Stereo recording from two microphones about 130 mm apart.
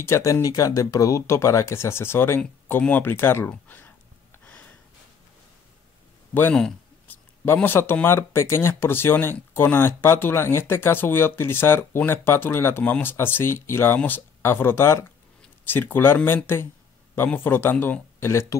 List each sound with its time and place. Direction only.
0.0 s speech: 20° left (ahead or behind)
6.3 s speech: 15° left (ahead or behind)